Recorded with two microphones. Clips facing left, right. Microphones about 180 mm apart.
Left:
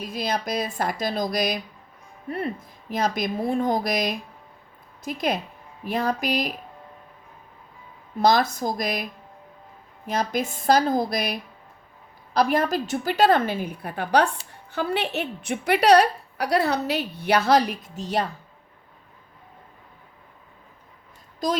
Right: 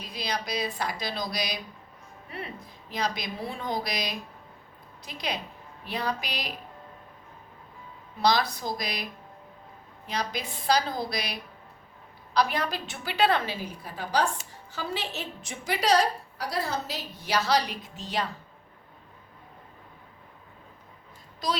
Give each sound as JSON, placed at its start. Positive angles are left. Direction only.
{"t": 0.0, "sound": "a woman's voice", "side_deg": 50}
{"t": 2.9, "sound": "a woman's voice", "side_deg": 50}
{"t": 8.2, "sound": "a woman's voice", "side_deg": 45}
{"t": 10.1, "sound": "a woman's voice", "side_deg": 50}